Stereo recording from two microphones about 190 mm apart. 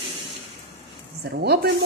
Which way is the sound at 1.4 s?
55° right (ahead or behind).